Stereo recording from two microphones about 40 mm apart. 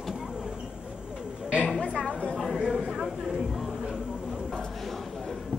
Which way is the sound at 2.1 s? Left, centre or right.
Left.